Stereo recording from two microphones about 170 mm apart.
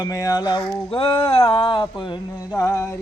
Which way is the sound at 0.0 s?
20° left (ahead or behind).